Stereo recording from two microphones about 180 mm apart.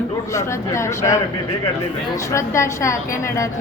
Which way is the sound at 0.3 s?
15° left (ahead or behind).